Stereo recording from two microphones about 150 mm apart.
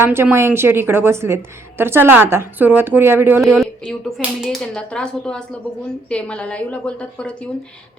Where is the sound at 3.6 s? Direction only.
5° left (ahead or behind).